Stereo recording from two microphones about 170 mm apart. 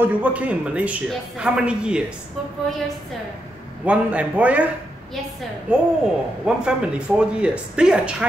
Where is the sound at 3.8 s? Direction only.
10° right (ahead or behind).